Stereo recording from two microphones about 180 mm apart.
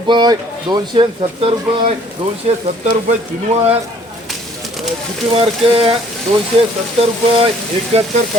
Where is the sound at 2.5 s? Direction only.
35° right (ahead or behind).